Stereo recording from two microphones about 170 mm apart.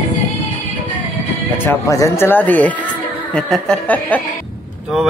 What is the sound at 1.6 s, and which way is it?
Speech, 15° left (ahead or behind).